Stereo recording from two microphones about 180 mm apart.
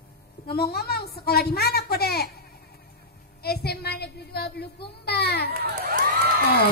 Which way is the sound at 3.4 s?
60° left (ahead or behind).